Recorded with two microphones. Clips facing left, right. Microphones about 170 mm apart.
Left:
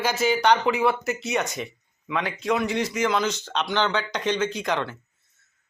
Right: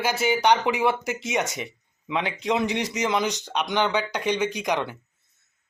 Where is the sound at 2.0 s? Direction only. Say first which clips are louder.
Even; 20° right (ahead or behind).